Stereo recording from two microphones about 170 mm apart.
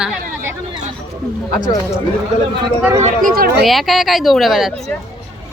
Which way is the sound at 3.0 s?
55° right (ahead or behind).